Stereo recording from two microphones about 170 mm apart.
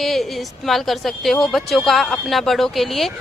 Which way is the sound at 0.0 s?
Centre (ahead or behind).